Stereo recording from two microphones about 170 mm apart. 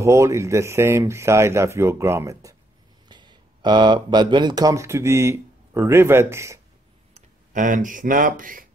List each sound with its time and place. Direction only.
0.0 s speech: 15° right (ahead or behind)
7.2 s speech: 50° right (ahead or behind)